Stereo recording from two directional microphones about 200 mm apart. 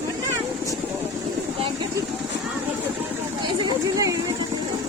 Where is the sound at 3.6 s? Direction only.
15° right (ahead or behind).